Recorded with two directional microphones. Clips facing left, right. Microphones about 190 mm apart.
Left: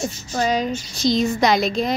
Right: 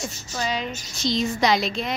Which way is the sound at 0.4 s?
40° left (ahead or behind).